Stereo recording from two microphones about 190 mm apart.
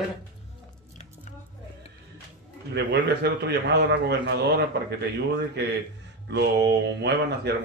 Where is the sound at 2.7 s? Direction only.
60° right (ahead or behind).